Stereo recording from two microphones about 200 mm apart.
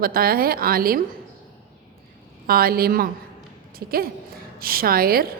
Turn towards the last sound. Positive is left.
turn(degrees=-50)  # may be behind; listen again after turning